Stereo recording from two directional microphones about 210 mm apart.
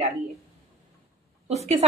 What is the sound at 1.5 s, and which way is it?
Speech, 30° right (ahead or behind).